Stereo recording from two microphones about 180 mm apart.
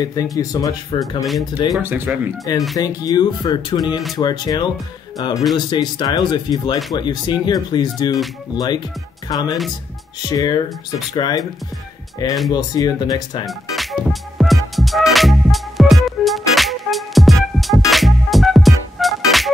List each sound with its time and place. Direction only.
0.0 s speech: 20° left (ahead or behind)
1.2 s speech: centre (ahead or behind)
2.8 s speech: 20° left (ahead or behind)
12.4 s speech: 20° left (ahead or behind)
13.5 s music: centre (ahead or behind)